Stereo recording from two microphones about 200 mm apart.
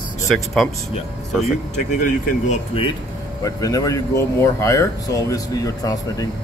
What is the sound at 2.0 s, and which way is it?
Speech, 35° left (ahead or behind).